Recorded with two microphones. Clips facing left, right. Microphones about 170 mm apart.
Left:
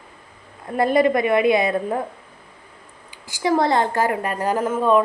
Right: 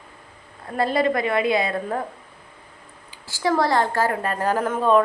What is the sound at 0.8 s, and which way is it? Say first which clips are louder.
A woman's voice: left 4 dB; 20° left (ahead or behind).